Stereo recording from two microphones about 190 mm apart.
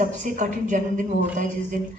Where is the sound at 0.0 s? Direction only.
40° right (ahead or behind).